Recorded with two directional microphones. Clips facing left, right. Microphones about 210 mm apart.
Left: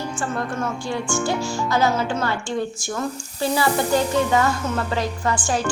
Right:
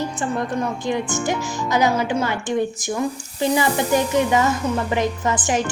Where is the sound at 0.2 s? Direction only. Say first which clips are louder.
Right 1 dB; 20° right (ahead or behind).